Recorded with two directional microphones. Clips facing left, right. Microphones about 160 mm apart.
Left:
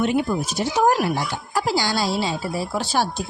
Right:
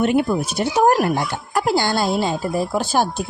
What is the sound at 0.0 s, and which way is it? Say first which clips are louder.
Speech: right 3 dB; 55° right (ahead or behind).